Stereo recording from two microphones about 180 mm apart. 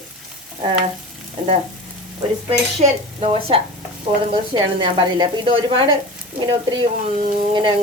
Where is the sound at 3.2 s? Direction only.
30° right (ahead or behind).